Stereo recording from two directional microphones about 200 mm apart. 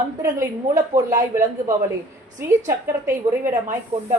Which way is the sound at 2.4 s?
10° right (ahead or behind).